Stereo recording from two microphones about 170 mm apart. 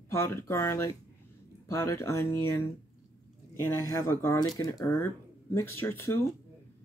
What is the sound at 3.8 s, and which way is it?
Speech, 15° left (ahead or behind).